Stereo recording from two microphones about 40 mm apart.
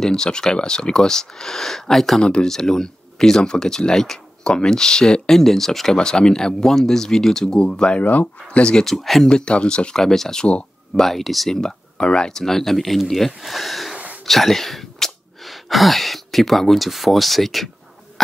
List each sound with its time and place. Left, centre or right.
0.0 s speech: centre
5.3 s speech: centre
5.9 s speech: centre
8.0 s speech: left
8.5 s speech: left
8.8 s speech: centre
9.2 s speech: left
9.9 s speech: centre
12.0 s speech: left
12.3 s speech: centre